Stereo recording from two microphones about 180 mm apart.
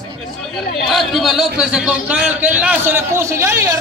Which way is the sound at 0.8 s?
Centre (ahead or behind).